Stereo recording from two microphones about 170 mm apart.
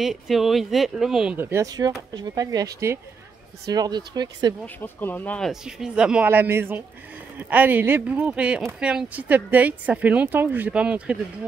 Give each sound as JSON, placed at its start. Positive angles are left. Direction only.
{"t": 0.0, "sound": "speech", "side_deg": 0}
{"t": 4.8, "sound": "speech", "side_deg": 10}